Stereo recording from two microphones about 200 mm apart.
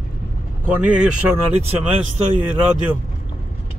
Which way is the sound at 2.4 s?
10° right (ahead or behind).